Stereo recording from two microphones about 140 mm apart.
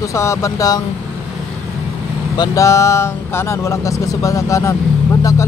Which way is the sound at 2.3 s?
25° left (ahead or behind).